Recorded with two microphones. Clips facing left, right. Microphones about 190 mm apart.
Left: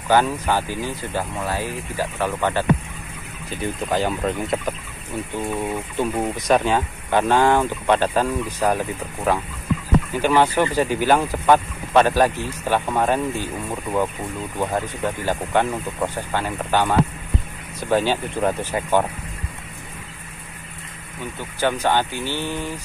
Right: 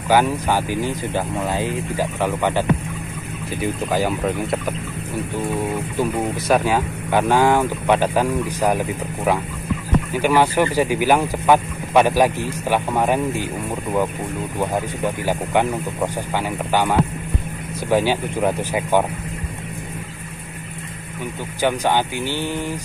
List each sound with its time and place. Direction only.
0.1 s speech: 10° right (ahead or behind)
3.6 s speech: 10° right (ahead or behind)
5.9 s speech: 5° right (ahead or behind)
14.6 s speech: 10° right (ahead or behind)
21.5 s speech: 15° right (ahead or behind)